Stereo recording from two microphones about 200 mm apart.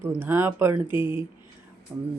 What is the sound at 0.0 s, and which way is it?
Speech, 10° right (ahead or behind).